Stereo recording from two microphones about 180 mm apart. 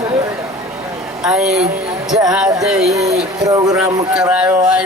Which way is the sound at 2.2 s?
5° right (ahead or behind).